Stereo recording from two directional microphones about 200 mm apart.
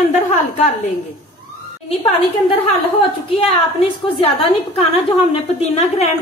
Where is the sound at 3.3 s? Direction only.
30° left (ahead or behind).